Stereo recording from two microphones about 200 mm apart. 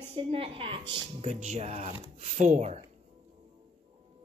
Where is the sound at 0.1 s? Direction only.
30° right (ahead or behind).